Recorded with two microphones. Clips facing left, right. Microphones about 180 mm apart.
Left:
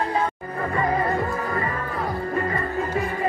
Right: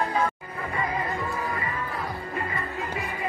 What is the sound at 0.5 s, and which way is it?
Music, 45° left (ahead or behind).